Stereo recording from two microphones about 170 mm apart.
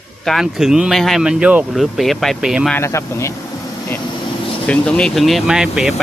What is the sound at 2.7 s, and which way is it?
Speech, 15° left (ahead or behind).